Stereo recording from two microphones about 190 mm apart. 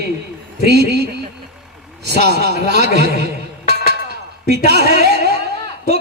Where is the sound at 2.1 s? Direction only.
60° right (ahead or behind).